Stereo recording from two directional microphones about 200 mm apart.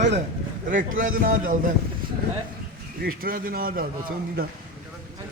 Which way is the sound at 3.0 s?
45° right (ahead or behind).